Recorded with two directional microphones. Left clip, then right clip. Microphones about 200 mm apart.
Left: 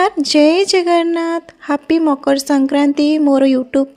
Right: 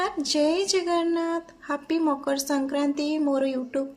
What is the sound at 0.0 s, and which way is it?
Speech, 45° left (ahead or behind).